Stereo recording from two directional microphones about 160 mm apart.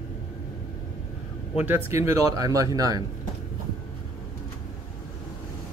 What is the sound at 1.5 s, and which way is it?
Speech, 15° right (ahead or behind).